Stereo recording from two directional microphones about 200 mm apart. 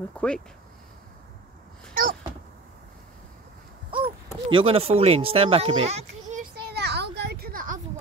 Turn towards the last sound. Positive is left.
turn(degrees=-45)  # may be behind; listen again after turning